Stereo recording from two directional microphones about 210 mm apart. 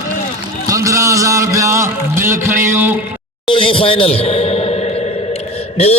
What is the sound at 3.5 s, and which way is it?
A man's voice, 25° left (ahead or behind).